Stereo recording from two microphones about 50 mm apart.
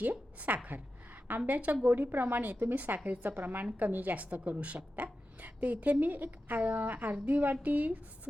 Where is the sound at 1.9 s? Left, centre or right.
Right.